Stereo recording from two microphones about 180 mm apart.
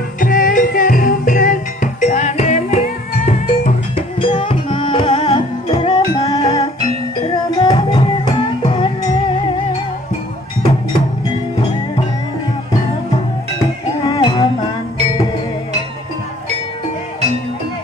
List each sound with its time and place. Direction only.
0.2 s music: 50° left (ahead or behind); by 9.1 s 25° left (ahead or behind)
14.0 s music: 30° left (ahead or behind)